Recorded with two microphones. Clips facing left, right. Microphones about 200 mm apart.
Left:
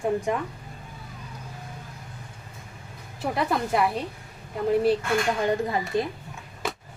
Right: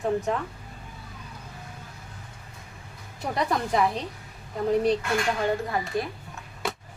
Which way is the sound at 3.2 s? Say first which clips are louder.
Left 1 dB; 5° left (ahead or behind).